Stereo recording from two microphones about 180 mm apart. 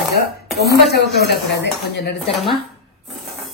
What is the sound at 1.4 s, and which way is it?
Speech, 70° left (ahead or behind).